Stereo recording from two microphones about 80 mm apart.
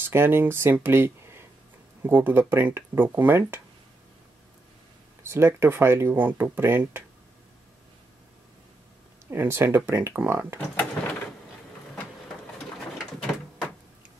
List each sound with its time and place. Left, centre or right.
0.0 s speech: right
5.3 s speech: right
9.3 s speech: right